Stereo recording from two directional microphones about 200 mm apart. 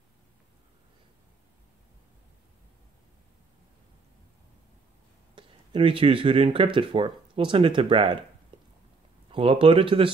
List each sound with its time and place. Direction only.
5.3 s speech: 25° right (ahead or behind)
9.3 s speech: 25° right (ahead or behind)